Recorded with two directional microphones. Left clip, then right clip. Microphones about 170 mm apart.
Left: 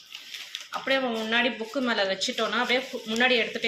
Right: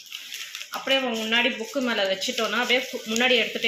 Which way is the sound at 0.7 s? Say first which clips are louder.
Right 2 dB; 20° right (ahead or behind).